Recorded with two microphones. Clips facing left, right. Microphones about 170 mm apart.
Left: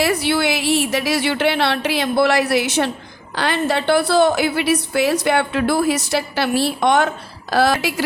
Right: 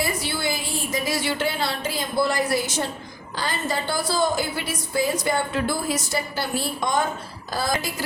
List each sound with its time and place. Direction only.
0.0 s a woman's voice: 70° left (ahead or behind)